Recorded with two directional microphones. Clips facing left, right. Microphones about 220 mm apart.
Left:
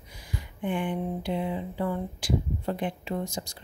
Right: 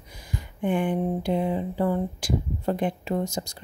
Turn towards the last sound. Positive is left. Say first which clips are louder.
# right 5 dB
turn(degrees=-40)  # may be behind; listen again after turning